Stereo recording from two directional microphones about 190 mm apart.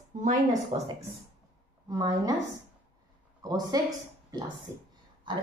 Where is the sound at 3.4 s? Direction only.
20° right (ahead or behind).